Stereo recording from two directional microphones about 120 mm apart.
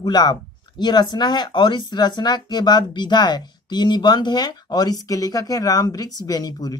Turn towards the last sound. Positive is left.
turn(degrees=35)  # may be behind; listen again after turning